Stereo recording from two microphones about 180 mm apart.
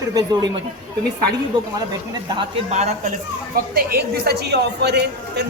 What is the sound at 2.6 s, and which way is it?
Speech, 40° right (ahead or behind).